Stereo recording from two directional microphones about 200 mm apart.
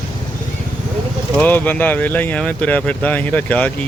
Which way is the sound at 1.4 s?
10° left (ahead or behind).